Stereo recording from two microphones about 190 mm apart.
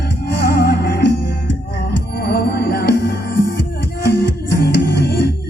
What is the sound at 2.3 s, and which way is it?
Music, 60° left (ahead or behind).